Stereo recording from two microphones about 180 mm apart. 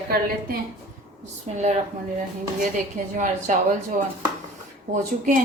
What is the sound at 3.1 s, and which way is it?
A woman's voice, 45° right (ahead or behind).